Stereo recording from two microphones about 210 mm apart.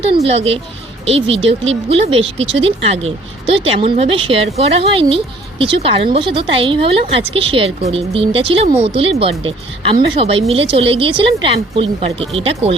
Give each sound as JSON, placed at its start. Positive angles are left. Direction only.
{"t": 0.0, "sound": "a woman's voice", "side_deg": -30}